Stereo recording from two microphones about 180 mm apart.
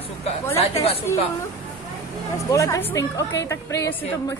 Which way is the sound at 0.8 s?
35° left (ahead or behind).